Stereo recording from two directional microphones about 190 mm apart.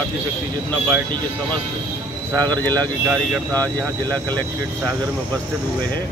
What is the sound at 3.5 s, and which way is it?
Speech, 10° left (ahead or behind).